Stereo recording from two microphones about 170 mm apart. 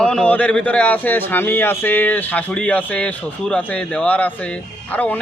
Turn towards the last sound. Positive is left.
turn(degrees=10)  # may be behind; listen again after turning